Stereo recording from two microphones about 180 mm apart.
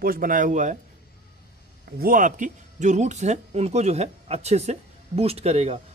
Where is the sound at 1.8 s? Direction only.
55° right (ahead or behind).